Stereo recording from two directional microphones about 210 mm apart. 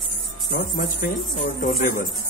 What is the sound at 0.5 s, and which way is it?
Speech, 40° left (ahead or behind).